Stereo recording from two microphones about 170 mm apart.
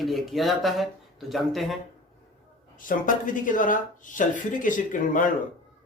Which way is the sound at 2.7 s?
50° left (ahead or behind).